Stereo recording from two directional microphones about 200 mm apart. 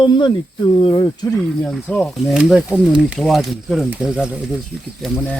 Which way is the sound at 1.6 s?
5° left (ahead or behind).